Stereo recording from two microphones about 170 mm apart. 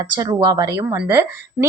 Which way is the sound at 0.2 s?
20° right (ahead or behind).